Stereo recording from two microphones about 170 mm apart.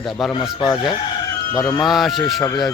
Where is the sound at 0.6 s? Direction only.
25° left (ahead or behind).